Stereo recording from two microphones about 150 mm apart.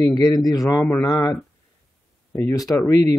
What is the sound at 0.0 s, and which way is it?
Speech, 25° left (ahead or behind).